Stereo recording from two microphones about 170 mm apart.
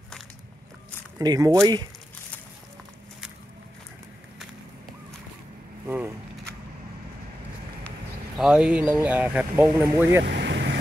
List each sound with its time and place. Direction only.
1.1 s speech: 20° right (ahead or behind)
5.9 s a sound: 10° right (ahead or behind)
8.4 s speech: 5° right (ahead or behind)
10.2 s vehicle: 90° right